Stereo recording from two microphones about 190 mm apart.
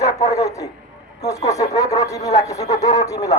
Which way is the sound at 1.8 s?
20° left (ahead or behind).